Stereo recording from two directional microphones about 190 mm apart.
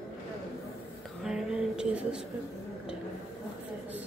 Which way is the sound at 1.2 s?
5° right (ahead or behind).